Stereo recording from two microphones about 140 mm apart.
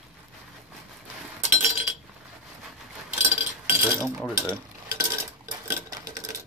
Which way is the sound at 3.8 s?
15° right (ahead or behind).